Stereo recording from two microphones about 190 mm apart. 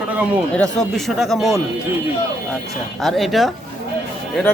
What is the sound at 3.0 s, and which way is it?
Speech, centre (ahead or behind).